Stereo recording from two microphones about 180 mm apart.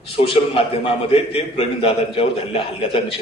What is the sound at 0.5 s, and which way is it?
A man's voice, 30° left (ahead or behind).